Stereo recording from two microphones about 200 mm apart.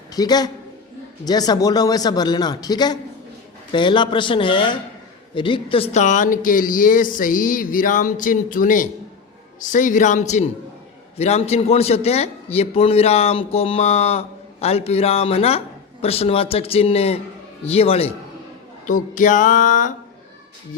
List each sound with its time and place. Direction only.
0.1 s a man's voice: 20° left (ahead or behind)
18.9 s a man's voice: 40° left (ahead or behind)